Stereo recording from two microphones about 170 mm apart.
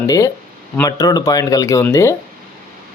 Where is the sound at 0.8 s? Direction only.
20° left (ahead or behind).